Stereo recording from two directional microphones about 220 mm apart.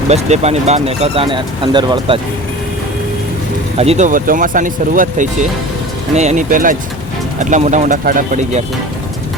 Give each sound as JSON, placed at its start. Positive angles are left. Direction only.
{"t": 0.1, "sound": "speech", "side_deg": -30}
{"t": 3.8, "sound": "speech", "side_deg": -30}